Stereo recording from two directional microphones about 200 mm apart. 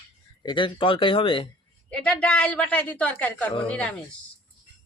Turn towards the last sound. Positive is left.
turn(degrees=5)  # may be behind; listen again after turning